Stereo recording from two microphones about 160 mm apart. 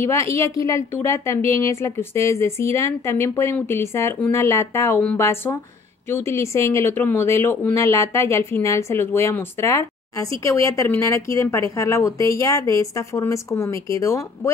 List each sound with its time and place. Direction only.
0.0 s a woman's voice: 15° left (ahead or behind)